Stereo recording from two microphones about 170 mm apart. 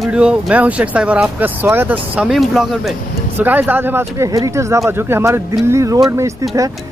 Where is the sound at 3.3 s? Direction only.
10° right (ahead or behind).